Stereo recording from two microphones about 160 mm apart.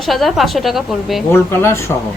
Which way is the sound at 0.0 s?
Centre (ahead or behind).